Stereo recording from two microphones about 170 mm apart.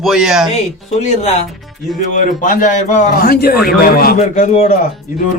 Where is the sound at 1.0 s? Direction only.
45° left (ahead or behind); by 4.1 s 60° left (ahead or behind).